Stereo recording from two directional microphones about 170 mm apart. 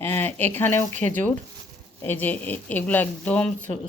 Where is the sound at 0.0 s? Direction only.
10° left (ahead or behind).